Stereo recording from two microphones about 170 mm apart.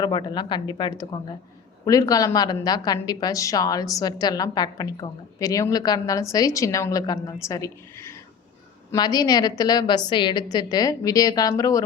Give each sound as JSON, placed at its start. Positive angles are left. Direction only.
{"t": 0.0, "sound": "a woman's voice", "side_deg": 25}